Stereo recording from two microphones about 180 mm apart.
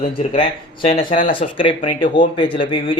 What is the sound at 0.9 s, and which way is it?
A man's voice, 30° left (ahead or behind).